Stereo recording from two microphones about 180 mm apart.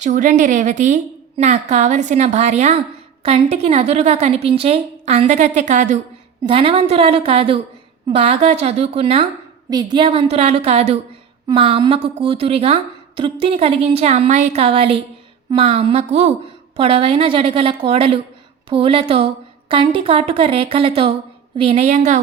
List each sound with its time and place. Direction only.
0.0 s a woman's voice: 45° right (ahead or behind)
6.5 s a woman's voice: 30° right (ahead or behind)